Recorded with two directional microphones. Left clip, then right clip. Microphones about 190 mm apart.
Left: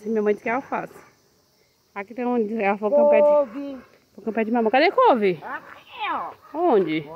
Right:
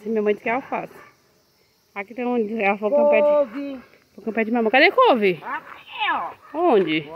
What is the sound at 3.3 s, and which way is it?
Speech, 55° right (ahead or behind).